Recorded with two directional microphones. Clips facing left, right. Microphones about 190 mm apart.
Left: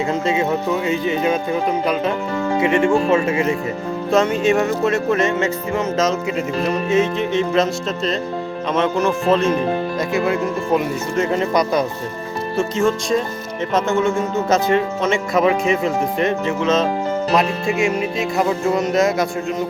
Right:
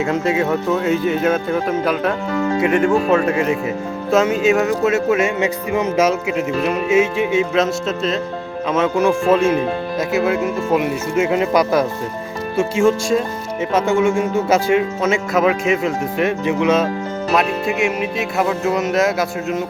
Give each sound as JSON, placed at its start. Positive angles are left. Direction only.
{"t": 0.9, "sound": "speech", "side_deg": 0}
{"t": 2.7, "sound": "speech", "side_deg": 0}
{"t": 17.7, "sound": "speech", "side_deg": -5}